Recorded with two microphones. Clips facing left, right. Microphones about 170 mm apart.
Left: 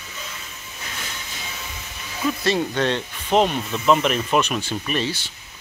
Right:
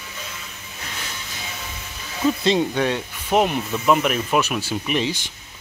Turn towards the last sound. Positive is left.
turn(degrees=-15)  # may be behind; listen again after turning